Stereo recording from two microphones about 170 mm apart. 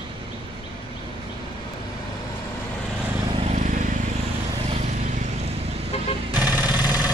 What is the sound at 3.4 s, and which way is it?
Vehicle, 45° right (ahead or behind).